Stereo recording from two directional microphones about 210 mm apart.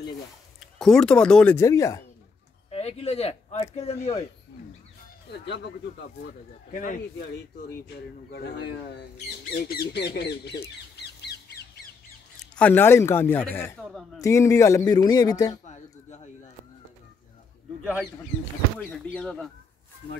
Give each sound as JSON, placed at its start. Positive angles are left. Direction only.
{"t": 0.7, "sound": "speech", "side_deg": 0}
{"t": 2.7, "sound": "speech", "side_deg": 30}
{"t": 5.4, "sound": "speech", "side_deg": 55}
{"t": 6.7, "sound": "speech", "side_deg": 40}
{"t": 8.3, "sound": "speech", "side_deg": 55}
{"t": 12.5, "sound": "speech", "side_deg": 10}
{"t": 15.6, "sound": "speech", "side_deg": 35}
{"t": 18.8, "sound": "speech", "side_deg": 5}